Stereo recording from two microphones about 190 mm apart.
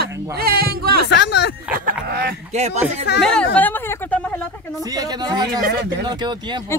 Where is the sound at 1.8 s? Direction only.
55° right (ahead or behind).